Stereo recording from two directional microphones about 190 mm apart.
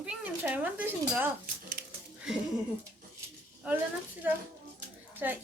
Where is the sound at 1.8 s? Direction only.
55° right (ahead or behind).